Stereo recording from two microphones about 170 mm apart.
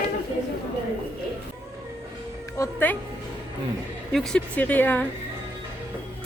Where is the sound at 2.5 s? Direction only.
15° left (ahead or behind).